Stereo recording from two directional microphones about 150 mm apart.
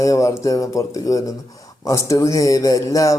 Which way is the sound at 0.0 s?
20° left (ahead or behind).